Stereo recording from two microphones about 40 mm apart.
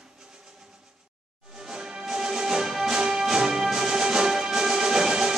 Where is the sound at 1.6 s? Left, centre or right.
Centre.